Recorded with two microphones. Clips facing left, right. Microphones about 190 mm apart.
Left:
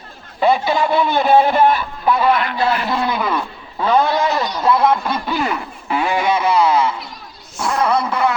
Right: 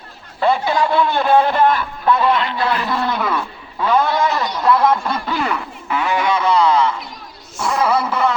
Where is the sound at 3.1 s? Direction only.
Centre (ahead or behind).